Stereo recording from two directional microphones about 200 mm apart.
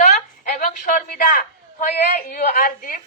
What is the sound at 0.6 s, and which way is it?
A woman's voice, 45° left (ahead or behind).